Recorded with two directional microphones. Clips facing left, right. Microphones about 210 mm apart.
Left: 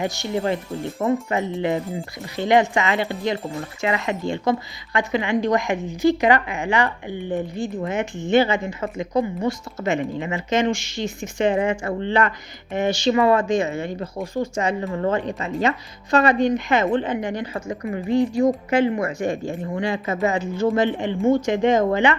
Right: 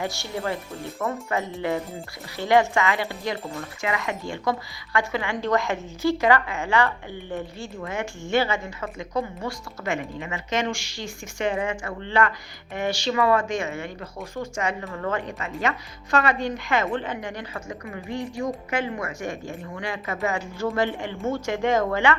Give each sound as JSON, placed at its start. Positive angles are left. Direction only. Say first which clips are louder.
{"t": 0.0, "sound": "speech", "louder": "left 5 dB", "side_deg": 20}
{"t": 12.0, "sound": "speech", "louder": "left 1 dB", "side_deg": 20}
{"t": 16.1, "sound": "speech", "louder": "left 6 dB", "side_deg": 20}